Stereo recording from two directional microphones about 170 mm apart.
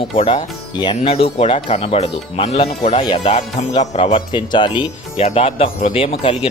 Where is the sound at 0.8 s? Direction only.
30° left (ahead or behind).